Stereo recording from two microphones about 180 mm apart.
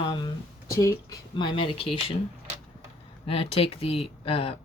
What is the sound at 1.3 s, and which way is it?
Speech, 25° left (ahead or behind).